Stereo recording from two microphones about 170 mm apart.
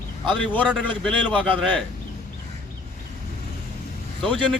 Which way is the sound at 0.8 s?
5° left (ahead or behind).